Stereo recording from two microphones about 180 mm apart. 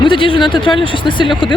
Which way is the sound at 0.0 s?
25° left (ahead or behind).